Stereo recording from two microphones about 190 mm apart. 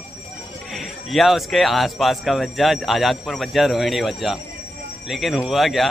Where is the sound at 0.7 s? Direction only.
Centre (ahead or behind).